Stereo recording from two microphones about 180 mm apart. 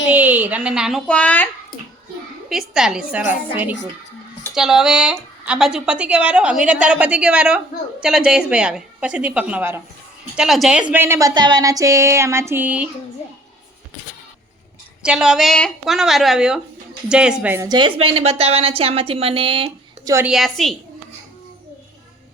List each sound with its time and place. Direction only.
0.1 s a woman's voice: 10° right (ahead or behind); by 1.5 s 10° left (ahead or behind)
2.5 s a woman's voice: centre (ahead or behind)
15.0 s a woman's voice: 5° right (ahead or behind)
17.7 s a woman's voice: 25° right (ahead or behind)
20.1 s a woman's voice: 5° right (ahead or behind)